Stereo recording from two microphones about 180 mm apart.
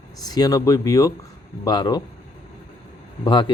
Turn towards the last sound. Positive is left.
turn(degrees=25)  # may be behind; listen again after turning